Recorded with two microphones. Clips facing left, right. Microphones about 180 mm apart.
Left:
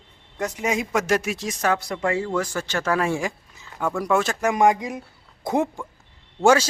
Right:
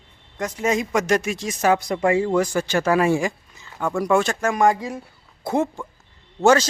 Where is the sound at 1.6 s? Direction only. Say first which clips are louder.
Right 5 dB; 15° right (ahead or behind); by 4.3 s centre (ahead or behind).